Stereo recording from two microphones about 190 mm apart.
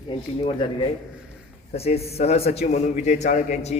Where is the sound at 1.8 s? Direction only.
30° left (ahead or behind).